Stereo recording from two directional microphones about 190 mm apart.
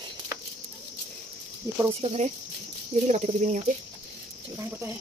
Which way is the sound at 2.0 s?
35° right (ahead or behind).